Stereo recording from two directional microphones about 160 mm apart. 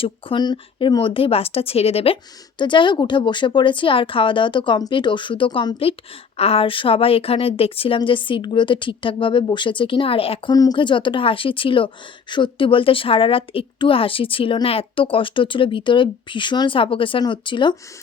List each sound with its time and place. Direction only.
0.0 s a woman's voice: 30° left (ahead or behind)
10.5 s a woman's voice: 25° left (ahead or behind)